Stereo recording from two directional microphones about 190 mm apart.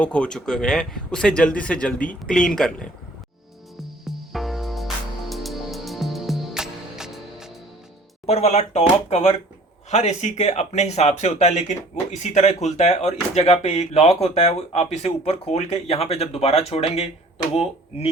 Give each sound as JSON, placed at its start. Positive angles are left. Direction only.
{"t": 0.0, "sound": "speech", "side_deg": 5}
{"t": 4.0, "sound": "music", "side_deg": 0}
{"t": 8.3, "sound": "speech", "side_deg": 35}